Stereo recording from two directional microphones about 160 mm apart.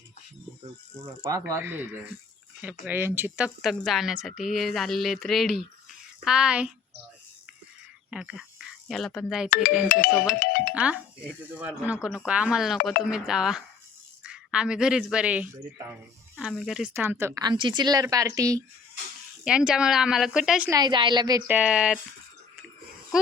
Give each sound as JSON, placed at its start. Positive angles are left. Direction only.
{"t": 1.2, "sound": "a woman's voice", "side_deg": -20}
{"t": 8.1, "sound": "a woman's voice", "side_deg": 0}
{"t": 9.9, "sound": "music", "side_deg": 65}
{"t": 10.8, "sound": "a woman's voice", "side_deg": -5}
{"t": 16.9, "sound": "speech", "side_deg": -15}
{"t": 17.4, "sound": "a woman's voice", "side_deg": -30}
{"t": 19.5, "sound": "a woman's voice", "side_deg": -5}
{"t": 20.7, "sound": "a woman's voice", "side_deg": -25}
{"t": 21.4, "sound": "speech", "side_deg": -10}